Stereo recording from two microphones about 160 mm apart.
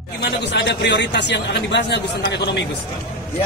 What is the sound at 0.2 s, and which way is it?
A man's voice, 90° left.